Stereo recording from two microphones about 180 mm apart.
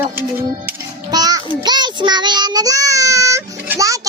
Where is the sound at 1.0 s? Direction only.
20° right (ahead or behind).